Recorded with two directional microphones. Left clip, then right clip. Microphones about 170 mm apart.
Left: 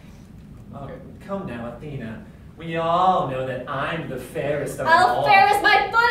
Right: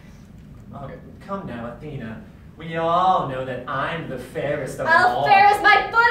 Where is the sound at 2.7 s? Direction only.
15° left (ahead or behind).